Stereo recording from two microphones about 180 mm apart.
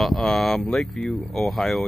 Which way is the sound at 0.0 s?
Centre (ahead or behind).